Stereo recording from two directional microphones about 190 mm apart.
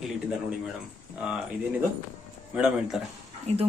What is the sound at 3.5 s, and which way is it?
Speech, 35° right (ahead or behind).